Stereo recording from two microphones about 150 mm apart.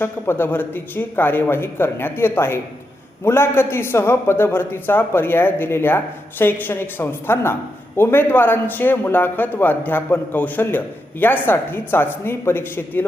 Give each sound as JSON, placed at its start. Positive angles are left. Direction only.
{"t": 0.0, "sound": "a man's voice", "side_deg": 15}